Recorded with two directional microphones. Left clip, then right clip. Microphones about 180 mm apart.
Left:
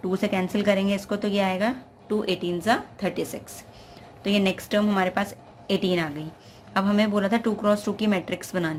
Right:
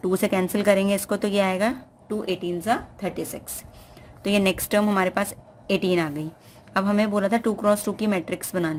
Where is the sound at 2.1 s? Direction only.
15° right (ahead or behind).